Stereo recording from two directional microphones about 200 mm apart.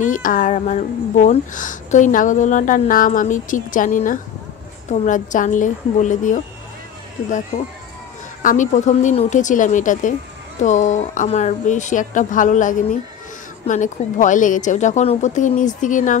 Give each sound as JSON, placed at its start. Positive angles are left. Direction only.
{"t": 0.0, "sound": "speech", "side_deg": 40}
{"t": 7.5, "sound": "speech", "side_deg": 35}